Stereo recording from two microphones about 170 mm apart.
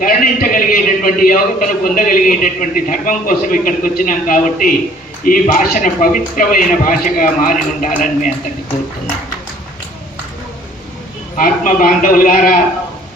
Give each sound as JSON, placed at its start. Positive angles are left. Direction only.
{"t": 0.0, "sound": "a man's voice", "side_deg": 55}
{"t": 11.3, "sound": "a man's voice", "side_deg": 55}